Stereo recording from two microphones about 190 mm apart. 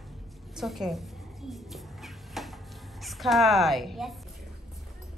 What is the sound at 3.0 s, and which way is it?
Speech, centre (ahead or behind).